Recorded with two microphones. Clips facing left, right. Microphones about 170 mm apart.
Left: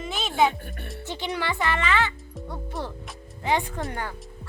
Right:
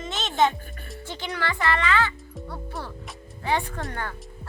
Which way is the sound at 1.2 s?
20° left (ahead or behind).